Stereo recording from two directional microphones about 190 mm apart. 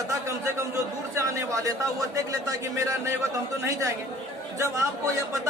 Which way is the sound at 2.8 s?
15° right (ahead or behind).